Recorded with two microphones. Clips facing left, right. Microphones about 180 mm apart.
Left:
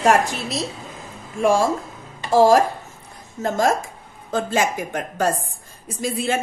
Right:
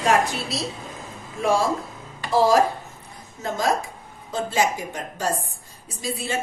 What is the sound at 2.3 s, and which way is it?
A woman's voice, 45° left (ahead or behind).